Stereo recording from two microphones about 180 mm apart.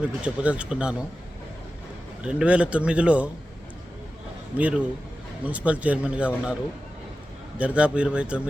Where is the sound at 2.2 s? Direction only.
5° right (ahead or behind).